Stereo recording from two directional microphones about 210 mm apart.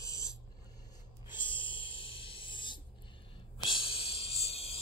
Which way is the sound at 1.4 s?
25° left (ahead or behind).